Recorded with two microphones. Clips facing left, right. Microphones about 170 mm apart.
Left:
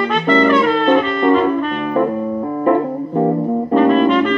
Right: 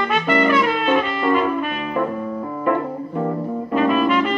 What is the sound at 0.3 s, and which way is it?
Music, 30° left (ahead or behind).